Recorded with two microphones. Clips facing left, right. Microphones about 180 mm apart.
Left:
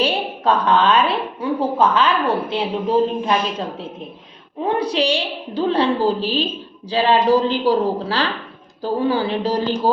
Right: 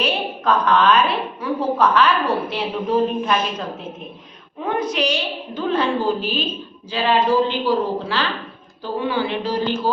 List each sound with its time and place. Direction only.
0.0 s a woman's voice: 30° left (ahead or behind)